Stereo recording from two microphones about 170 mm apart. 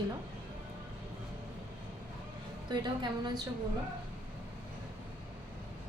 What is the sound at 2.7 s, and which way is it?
Speech, 25° right (ahead or behind).